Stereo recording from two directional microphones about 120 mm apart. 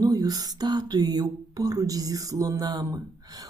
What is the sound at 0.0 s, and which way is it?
A woman's voice, 30° right (ahead or behind).